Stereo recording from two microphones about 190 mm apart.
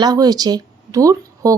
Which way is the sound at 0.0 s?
20° right (ahead or behind).